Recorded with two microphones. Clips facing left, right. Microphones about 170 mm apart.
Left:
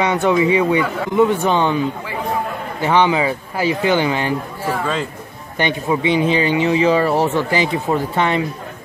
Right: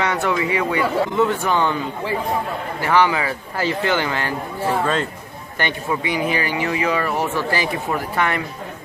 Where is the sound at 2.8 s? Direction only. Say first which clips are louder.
Left 3 dB; 20° left (ahead or behind).